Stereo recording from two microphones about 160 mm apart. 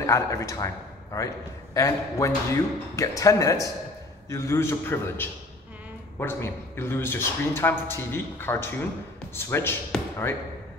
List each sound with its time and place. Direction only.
0.0 s speech: 20° left (ahead or behind)